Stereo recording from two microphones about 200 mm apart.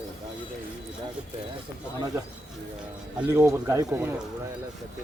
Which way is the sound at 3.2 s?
15° right (ahead or behind).